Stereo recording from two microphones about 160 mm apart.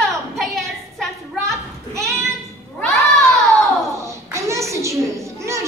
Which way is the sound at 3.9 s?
20° right (ahead or behind).